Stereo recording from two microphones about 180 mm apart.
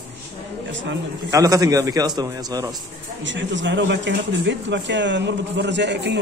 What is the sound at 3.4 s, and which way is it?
Speech, 90° right.